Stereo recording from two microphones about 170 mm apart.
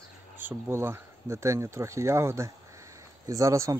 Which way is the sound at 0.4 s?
15° right (ahead or behind).